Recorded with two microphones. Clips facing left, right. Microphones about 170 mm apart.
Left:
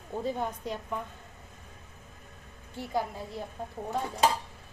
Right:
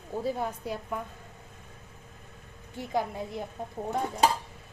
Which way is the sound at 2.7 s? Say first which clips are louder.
Right 2 dB; 20° right (ahead or behind).